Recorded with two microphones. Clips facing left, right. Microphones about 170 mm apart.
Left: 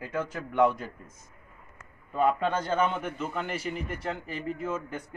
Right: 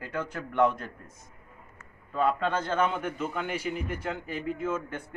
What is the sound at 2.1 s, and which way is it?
Speech, 10° left (ahead or behind).